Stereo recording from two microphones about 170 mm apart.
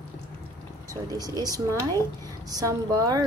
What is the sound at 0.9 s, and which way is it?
A woman's voice, 20° right (ahead or behind).